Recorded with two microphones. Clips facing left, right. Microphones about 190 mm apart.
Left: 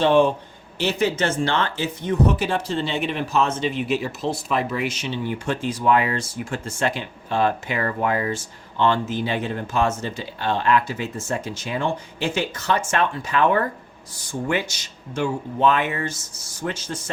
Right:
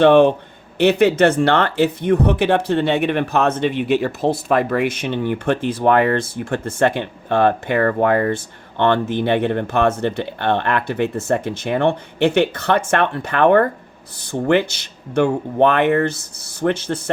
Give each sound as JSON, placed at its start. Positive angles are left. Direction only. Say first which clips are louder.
{"t": 0.0, "sound": "speech", "louder": "right 6 dB", "side_deg": -60}